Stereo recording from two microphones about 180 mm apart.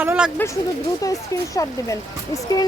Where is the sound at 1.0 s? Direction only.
20° left (ahead or behind).